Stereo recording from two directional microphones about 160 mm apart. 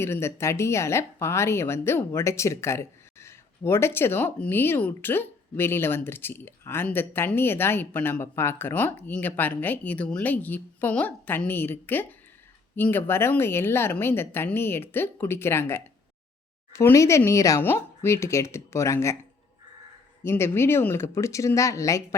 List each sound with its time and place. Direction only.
0.0 s a woman's voice: 15° left (ahead or behind)
20.2 s a woman's voice: 15° left (ahead or behind)